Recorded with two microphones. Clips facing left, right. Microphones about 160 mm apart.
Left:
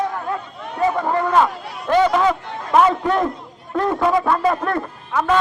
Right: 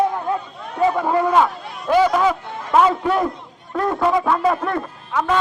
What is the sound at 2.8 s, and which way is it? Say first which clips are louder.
A man's voice: even; 5° right (ahead or behind).